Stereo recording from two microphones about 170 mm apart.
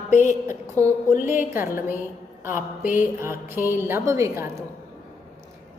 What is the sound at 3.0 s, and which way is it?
A woman's voice, 15° right (ahead or behind).